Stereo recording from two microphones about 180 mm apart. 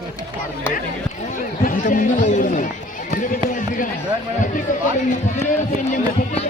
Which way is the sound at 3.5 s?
50° left (ahead or behind).